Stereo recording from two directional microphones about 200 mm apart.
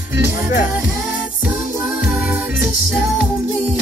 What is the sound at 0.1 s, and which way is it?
Music, 15° right (ahead or behind).